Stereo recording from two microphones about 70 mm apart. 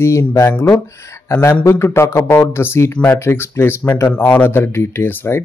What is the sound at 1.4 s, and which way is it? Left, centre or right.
A man's voice, left.